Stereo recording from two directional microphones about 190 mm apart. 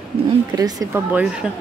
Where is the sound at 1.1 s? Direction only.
5° right (ahead or behind).